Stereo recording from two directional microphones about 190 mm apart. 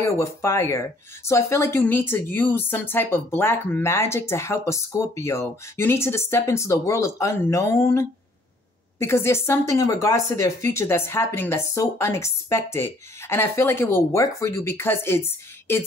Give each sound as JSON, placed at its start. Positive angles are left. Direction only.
{"t": 0.0, "sound": "speech", "side_deg": 15}